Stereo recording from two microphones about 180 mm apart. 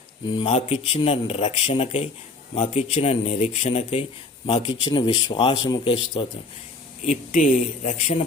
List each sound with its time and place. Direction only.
0.4 s speech: 40° left (ahead or behind)
7.1 s a man's voice: 45° left (ahead or behind)